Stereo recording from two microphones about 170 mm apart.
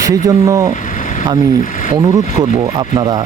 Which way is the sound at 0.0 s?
20° right (ahead or behind).